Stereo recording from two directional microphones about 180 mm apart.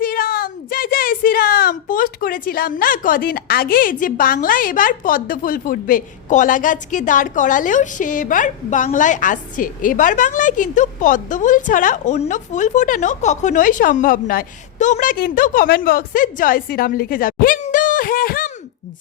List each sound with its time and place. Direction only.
0.0 s a woman's voice: 55° left (ahead or behind)